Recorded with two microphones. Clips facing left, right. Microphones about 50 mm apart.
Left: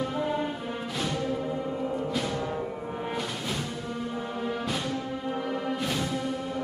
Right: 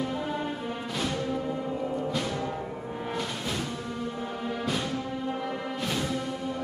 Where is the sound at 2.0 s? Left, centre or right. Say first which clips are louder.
Even; centre.